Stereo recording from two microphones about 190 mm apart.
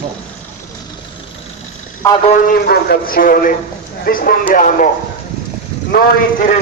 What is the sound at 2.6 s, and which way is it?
Speech, 55° left (ahead or behind).